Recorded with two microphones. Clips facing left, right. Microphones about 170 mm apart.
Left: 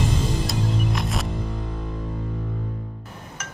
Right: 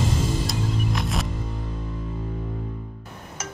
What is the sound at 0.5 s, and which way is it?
Music, centre (ahead or behind).